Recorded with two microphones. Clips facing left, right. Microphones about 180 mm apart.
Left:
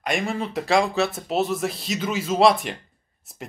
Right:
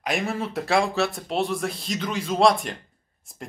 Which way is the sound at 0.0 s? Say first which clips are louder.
Left 1 dB; centre (ahead or behind).